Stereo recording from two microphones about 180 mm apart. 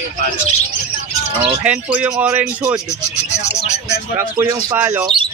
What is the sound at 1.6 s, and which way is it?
Speech, 5° right (ahead or behind).